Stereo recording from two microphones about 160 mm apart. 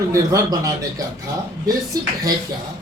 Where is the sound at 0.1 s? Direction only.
20° right (ahead or behind).